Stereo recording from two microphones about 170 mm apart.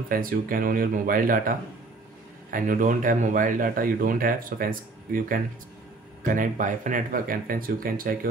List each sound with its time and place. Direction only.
0.1 s speech: 60° right (ahead or behind)
2.5 s speech: 55° right (ahead or behind)